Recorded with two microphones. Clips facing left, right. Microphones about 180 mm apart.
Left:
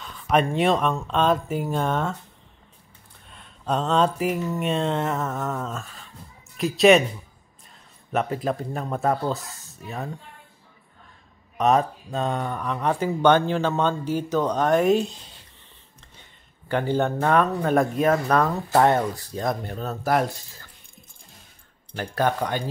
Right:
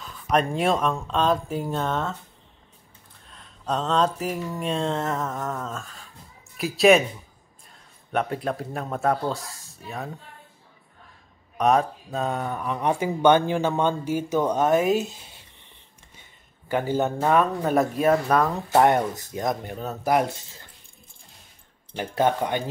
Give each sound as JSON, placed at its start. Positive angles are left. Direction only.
{"t": 0.0, "sound": "speech", "side_deg": 0}
{"t": 3.3, "sound": "speech", "side_deg": 5}
{"t": 8.1, "sound": "speech", "side_deg": 0}
{"t": 11.5, "sound": "speech", "side_deg": 0}
{"t": 16.6, "sound": "speech", "side_deg": -10}
{"t": 22.1, "sound": "speech", "side_deg": -20}